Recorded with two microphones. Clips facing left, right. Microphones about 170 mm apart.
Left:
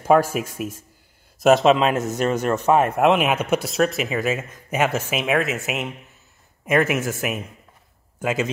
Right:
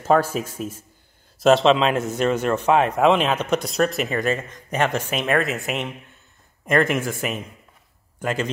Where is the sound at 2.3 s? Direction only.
40° left (ahead or behind).